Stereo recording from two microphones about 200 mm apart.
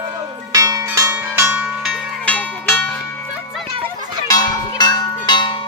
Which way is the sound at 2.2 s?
5° left (ahead or behind).